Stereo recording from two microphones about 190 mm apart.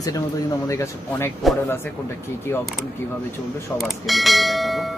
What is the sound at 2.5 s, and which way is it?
Speech, 10° left (ahead or behind).